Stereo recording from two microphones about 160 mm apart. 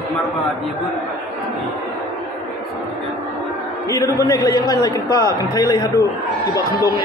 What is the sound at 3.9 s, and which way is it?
A man's voice, 20° left (ahead or behind).